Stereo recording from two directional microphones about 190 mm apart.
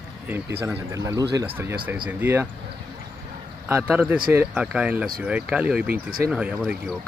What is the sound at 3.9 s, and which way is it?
Speech, 10° right (ahead or behind).